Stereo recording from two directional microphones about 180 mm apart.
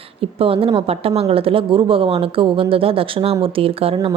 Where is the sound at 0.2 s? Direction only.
30° right (ahead or behind).